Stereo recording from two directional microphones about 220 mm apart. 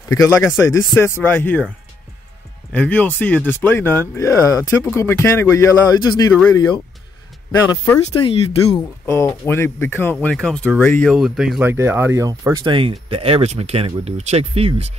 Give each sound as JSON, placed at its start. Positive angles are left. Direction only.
{"t": 0.1, "sound": "speech", "side_deg": 15}
{"t": 2.7, "sound": "speech", "side_deg": 5}
{"t": 6.3, "sound": "speech", "side_deg": 5}
{"t": 8.2, "sound": "speech", "side_deg": 25}
{"t": 9.0, "sound": "speech", "side_deg": 10}